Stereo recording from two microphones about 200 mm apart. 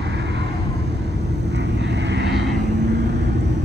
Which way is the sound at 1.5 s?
60° right (ahead or behind).